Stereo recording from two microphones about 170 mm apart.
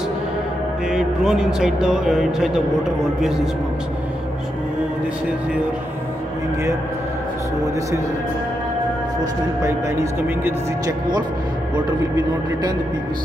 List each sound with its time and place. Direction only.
0.8 s a man's voice: 5° right (ahead or behind)
9.2 s speech: 15° right (ahead or behind)